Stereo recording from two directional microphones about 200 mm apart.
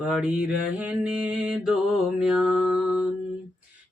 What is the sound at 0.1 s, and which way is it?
Speech, 5° right (ahead or behind).